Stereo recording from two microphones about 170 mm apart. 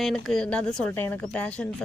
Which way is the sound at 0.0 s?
Centre (ahead or behind).